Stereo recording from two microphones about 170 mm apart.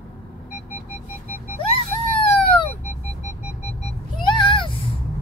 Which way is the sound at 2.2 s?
30° left (ahead or behind).